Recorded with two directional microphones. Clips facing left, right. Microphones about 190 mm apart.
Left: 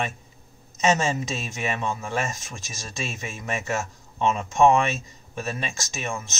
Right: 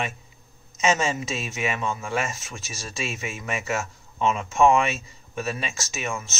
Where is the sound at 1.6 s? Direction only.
35° left (ahead or behind).